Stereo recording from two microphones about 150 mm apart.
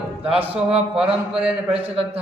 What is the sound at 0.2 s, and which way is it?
Speech, 40° right (ahead or behind).